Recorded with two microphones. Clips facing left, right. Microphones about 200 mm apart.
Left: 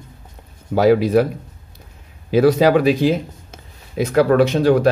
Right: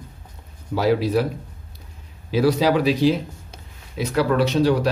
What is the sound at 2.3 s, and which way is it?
Speech, 50° left (ahead or behind).